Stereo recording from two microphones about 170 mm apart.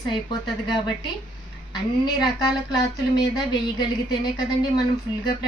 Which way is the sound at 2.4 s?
20° left (ahead or behind).